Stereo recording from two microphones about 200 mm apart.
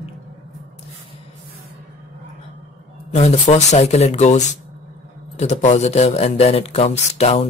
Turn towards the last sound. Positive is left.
turn(degrees=30)  # may be behind; listen again after turning